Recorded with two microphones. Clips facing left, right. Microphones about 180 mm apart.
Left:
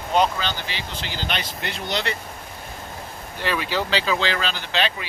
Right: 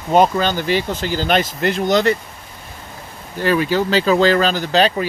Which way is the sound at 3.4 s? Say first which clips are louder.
Right 8 dB; 45° right (ahead or behind).